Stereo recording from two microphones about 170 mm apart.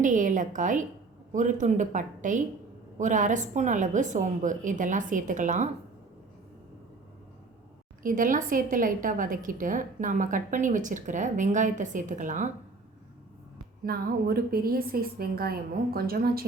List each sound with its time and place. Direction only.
0.0 s a woman's voice: 50° right (ahead or behind)
8.0 s a woman's voice: 55° right (ahead or behind)
13.8 s a woman's voice: 60° right (ahead or behind)